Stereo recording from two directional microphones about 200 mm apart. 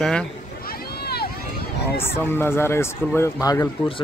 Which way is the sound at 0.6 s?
50° left (ahead or behind).